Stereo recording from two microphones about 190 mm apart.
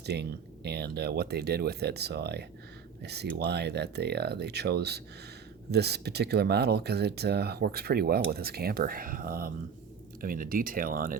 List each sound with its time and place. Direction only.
0.0 s speech: 60° right (ahead or behind)